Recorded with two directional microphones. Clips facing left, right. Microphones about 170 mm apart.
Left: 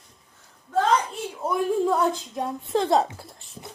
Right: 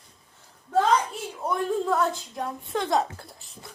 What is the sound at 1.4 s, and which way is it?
A woman's voice, 10° left (ahead or behind).